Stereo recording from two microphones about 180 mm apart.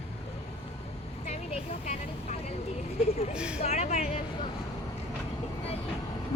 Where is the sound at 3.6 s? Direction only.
35° left (ahead or behind).